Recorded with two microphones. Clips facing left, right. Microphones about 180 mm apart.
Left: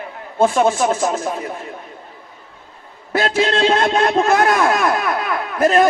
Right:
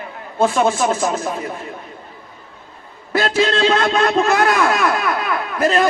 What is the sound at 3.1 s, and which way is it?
A man's voice, 55° left (ahead or behind).